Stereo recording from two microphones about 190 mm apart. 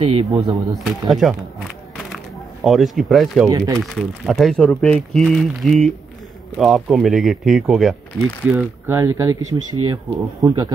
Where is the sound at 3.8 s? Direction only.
Centre (ahead or behind).